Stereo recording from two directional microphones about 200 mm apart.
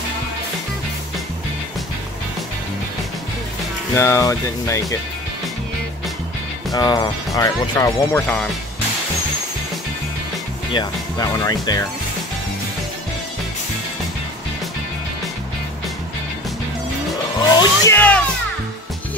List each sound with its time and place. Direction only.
3.9 s speech: 15° left (ahead or behind)
6.7 s speech: 15° left (ahead or behind)
10.7 s speech: 20° left (ahead or behind)
17.6 s speech: 15° left (ahead or behind)